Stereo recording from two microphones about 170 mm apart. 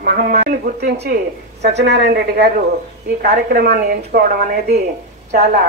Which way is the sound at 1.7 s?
80° right.